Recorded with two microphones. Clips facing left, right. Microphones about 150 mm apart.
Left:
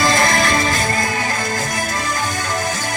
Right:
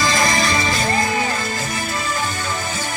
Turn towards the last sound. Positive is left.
turn(degrees=45)  # may be behind; listen again after turning